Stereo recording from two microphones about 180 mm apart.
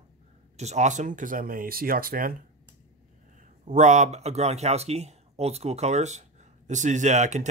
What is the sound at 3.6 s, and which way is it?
Speech, 40° right (ahead or behind).